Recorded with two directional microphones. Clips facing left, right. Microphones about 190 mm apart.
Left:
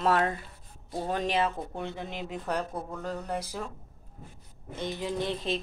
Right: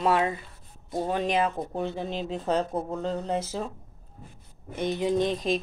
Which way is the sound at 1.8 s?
30° right (ahead or behind).